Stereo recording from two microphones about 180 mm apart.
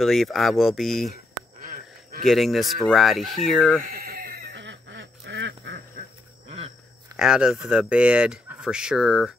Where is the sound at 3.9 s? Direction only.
55° right (ahead or behind).